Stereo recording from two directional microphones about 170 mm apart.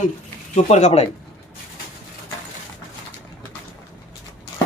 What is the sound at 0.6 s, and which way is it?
Speech, 40° left (ahead or behind).